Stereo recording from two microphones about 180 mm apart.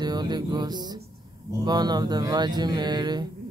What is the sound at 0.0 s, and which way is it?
Music, 25° right (ahead or behind).